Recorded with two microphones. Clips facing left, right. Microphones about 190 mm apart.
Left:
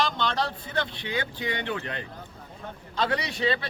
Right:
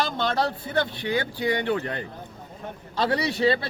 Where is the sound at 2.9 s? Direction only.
35° right (ahead or behind).